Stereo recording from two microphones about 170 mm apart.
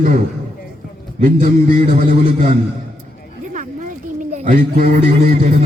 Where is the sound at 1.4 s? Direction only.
60° right (ahead or behind).